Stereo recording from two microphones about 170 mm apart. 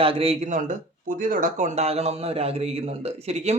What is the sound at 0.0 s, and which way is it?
Speech, 35° right (ahead or behind).